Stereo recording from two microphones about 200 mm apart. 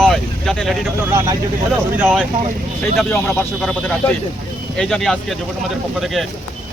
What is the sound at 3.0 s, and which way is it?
Speech, 5° left (ahead or behind).